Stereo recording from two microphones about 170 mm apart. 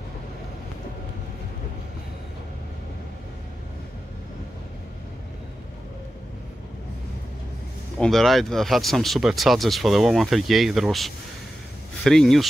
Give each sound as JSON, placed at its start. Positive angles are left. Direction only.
{"t": 8.0, "sound": "speech", "side_deg": 0}